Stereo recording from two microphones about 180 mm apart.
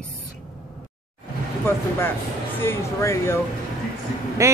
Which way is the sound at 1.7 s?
15° left (ahead or behind).